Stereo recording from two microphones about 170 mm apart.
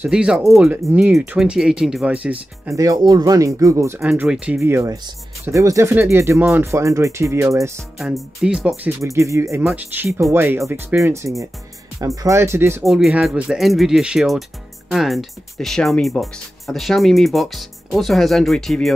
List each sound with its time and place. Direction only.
0.0 s speech: 5° right (ahead or behind)
2.8 s speech: 20° right (ahead or behind)
8.0 s speech: centre (ahead or behind)
9.0 s speech: 15° right (ahead or behind)
12.8 s speech: centre (ahead or behind)